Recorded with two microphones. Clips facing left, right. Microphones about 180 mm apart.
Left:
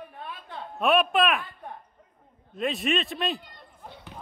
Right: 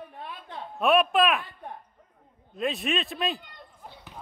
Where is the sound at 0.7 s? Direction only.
Centre (ahead or behind).